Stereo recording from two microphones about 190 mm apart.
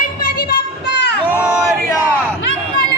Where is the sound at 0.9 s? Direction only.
65° left (ahead or behind).